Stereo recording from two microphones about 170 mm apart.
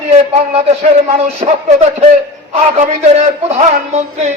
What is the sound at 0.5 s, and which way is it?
A man's voice, 35° right (ahead or behind).